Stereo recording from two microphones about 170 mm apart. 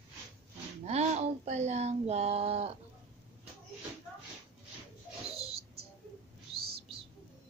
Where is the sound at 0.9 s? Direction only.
40° right (ahead or behind).